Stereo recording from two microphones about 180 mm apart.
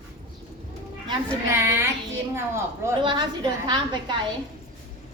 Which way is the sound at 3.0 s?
25° right (ahead or behind).